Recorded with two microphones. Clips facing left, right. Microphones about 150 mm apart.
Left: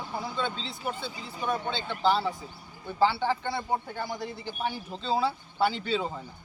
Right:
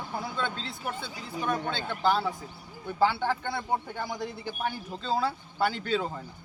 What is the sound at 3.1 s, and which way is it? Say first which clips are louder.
Speech: left 1 dB; 10° left (ahead or behind).